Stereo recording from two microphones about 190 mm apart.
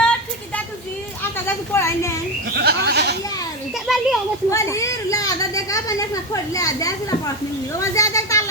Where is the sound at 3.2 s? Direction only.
20° left (ahead or behind).